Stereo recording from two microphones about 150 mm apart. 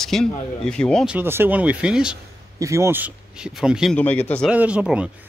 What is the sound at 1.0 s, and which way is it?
Speech, 10° right (ahead or behind).